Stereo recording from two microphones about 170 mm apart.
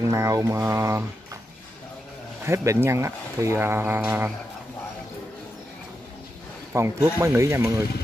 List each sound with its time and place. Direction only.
0.0 s speech: 15° right (ahead or behind)
2.4 s speech: 15° right (ahead or behind)
6.7 s speech: 15° right (ahead or behind)